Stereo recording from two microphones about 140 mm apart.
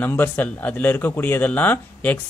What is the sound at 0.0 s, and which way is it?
A man's voice, 15° left (ahead or behind).